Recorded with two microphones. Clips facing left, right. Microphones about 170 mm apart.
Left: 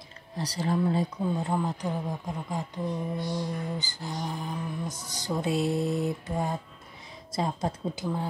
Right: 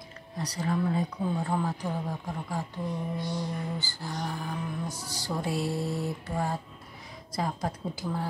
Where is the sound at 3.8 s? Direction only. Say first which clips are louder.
Even; 20° left (ahead or behind).